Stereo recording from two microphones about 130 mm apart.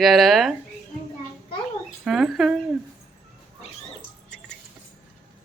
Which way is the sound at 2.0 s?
Centre (ahead or behind).